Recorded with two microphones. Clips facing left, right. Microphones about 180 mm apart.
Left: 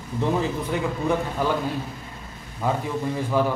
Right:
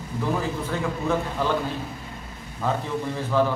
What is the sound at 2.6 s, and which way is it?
Speech, 15° left (ahead or behind).